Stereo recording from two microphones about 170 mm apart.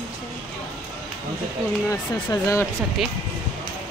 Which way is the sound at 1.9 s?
15° left (ahead or behind).